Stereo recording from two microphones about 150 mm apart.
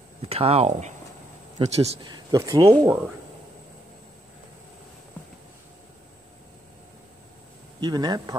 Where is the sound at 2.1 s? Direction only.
25° right (ahead or behind).